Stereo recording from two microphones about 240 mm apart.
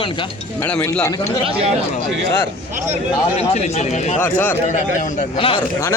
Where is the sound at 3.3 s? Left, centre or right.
Left.